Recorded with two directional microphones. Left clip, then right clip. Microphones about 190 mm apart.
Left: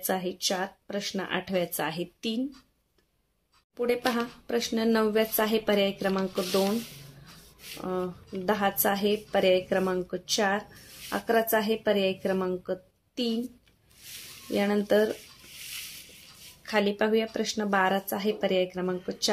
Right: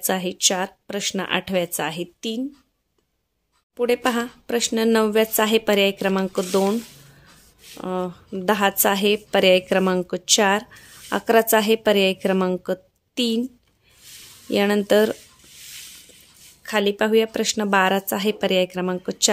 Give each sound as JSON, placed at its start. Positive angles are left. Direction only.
{"t": 0.0, "sound": "speech", "side_deg": -45}
{"t": 3.7, "sound": "speech", "side_deg": -45}
{"t": 14.5, "sound": "speech", "side_deg": -45}
{"t": 16.6, "sound": "speech", "side_deg": -35}